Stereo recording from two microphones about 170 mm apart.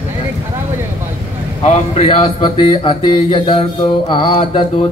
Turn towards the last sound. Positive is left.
turn(degrees=30)  # may be behind; listen again after turning